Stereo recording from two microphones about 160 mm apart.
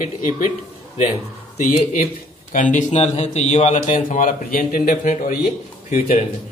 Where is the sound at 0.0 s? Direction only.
50° left (ahead or behind).